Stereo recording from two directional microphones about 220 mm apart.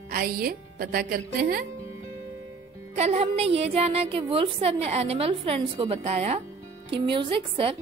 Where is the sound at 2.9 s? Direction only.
30° right (ahead or behind).